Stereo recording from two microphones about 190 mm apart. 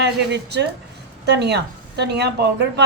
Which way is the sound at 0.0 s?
65° right (ahead or behind).